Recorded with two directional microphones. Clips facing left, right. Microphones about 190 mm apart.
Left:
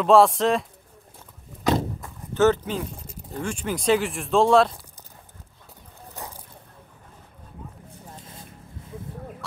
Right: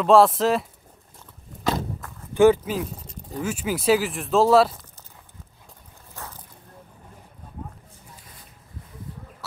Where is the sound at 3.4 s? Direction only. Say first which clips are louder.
Right 2 dB; 5° right (ahead or behind).